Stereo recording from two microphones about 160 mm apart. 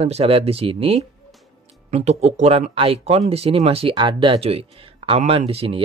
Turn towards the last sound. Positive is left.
turn(degrees=-35)  # may be behind; listen again after turning